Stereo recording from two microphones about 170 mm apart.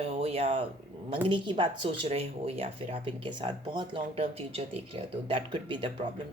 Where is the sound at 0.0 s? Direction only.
35° right (ahead or behind).